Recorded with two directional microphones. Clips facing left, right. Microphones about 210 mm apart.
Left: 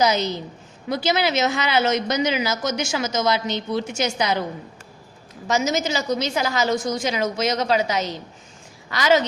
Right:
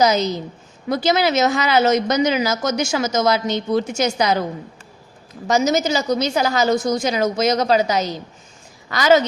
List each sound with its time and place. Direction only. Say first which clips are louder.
0.0 s a woman's voice: right 3 dB; 40° right (ahead or behind)
5.5 s a woman's voice: right 4 dB; 35° right (ahead or behind)